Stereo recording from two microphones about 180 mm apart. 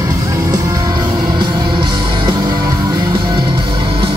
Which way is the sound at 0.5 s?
20° right (ahead or behind).